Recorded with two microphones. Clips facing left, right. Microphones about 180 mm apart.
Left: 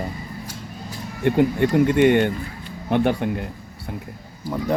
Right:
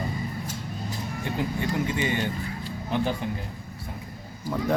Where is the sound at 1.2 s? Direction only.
65° left (ahead or behind).